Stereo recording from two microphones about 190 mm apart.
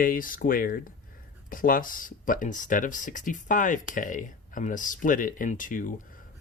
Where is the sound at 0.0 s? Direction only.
45° left (ahead or behind).